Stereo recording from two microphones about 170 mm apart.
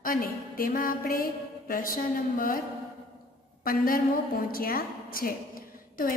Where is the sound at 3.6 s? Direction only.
60° left (ahead or behind).